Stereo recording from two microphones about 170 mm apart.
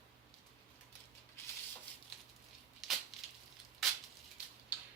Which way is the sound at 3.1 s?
Centre (ahead or behind).